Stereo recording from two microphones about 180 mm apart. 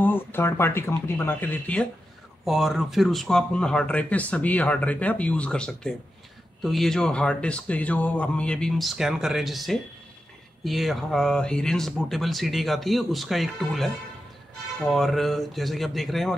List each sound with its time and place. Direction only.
0.0 s speech: 10° left (ahead or behind)